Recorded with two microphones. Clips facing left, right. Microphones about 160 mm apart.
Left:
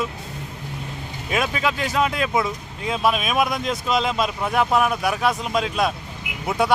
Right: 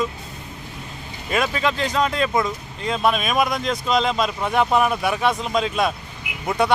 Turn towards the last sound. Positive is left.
turn(degrees=5)  # may be behind; listen again after turning